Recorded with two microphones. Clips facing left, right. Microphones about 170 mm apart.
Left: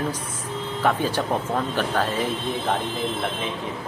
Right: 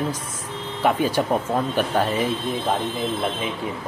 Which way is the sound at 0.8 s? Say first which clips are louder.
Right 3 dB; 10° right (ahead or behind).